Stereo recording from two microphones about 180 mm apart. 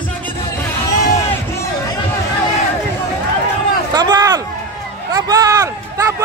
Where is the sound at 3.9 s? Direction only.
20° right (ahead or behind).